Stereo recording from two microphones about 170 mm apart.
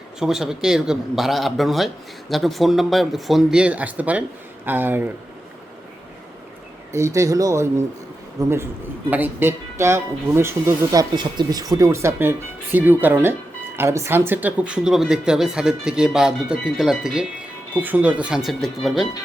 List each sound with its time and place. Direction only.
0.2 s speech: 5° right (ahead or behind)
6.9 s speech: 15° right (ahead or behind); by 19.0 s centre (ahead or behind)